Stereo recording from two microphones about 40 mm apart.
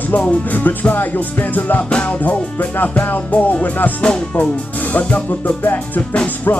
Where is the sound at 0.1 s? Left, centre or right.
Left.